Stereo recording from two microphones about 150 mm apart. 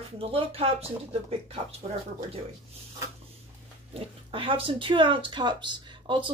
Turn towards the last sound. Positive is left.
turn(degrees=-30)  # may be behind; listen again after turning